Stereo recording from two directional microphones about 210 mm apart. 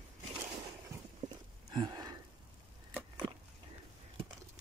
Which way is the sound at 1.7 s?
20° right (ahead or behind).